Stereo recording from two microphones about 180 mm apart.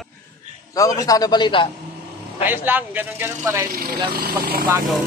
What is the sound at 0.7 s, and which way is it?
A man's voice, 20° left (ahead or behind).